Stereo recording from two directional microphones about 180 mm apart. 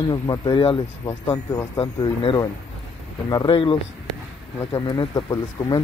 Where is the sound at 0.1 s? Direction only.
25° left (ahead or behind).